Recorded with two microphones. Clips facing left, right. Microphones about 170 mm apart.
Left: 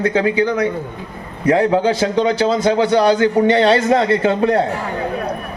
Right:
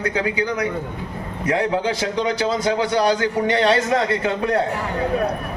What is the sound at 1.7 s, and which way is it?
A man's voice, 25° left (ahead or behind).